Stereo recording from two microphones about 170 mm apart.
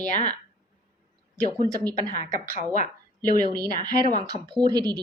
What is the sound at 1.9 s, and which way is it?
Speech, 25° right (ahead or behind).